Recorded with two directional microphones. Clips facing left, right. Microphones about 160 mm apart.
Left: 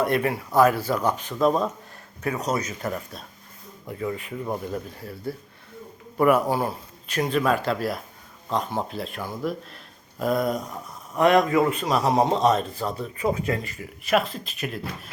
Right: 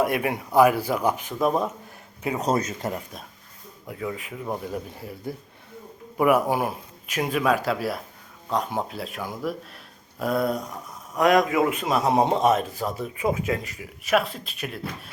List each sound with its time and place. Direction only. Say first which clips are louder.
0.0 s a man's voice: left 1 dB; 10° right (ahead or behind)
2.4 s speech: right 5 dB; 30° right (ahead or behind)
3.8 s a man's voice: left 2 dB; centre (ahead or behind)
12.0 s speech: even; 20° right (ahead or behind)
12.4 s speech: even; 10° right (ahead or behind)